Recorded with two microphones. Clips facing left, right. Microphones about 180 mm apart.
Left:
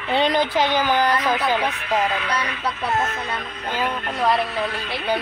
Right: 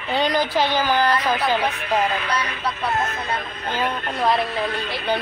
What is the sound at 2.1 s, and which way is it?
Speech, 35° right (ahead or behind).